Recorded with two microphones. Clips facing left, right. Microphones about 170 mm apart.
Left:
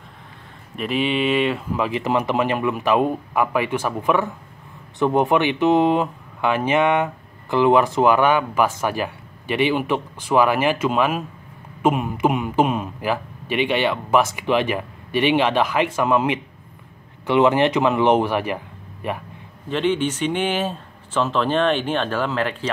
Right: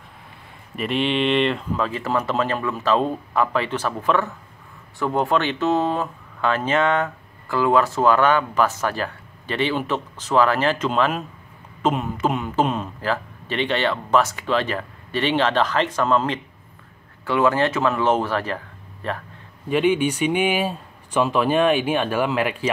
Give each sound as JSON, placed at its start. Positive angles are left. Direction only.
{"t": 0.7, "sound": "speech", "side_deg": 0}
{"t": 19.7, "sound": "speech", "side_deg": -10}